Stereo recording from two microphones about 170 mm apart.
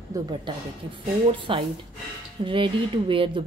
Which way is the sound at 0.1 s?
20° right (ahead or behind).